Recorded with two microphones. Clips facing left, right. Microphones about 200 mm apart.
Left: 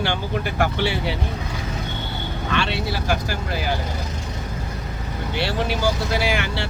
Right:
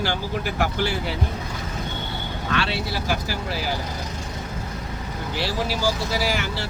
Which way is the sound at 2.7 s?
55° left (ahead or behind).